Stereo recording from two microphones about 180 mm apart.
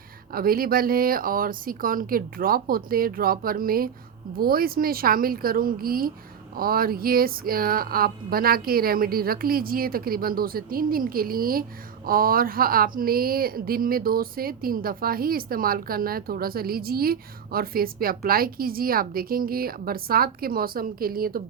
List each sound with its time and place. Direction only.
0.3 s speech: 55° right (ahead or behind)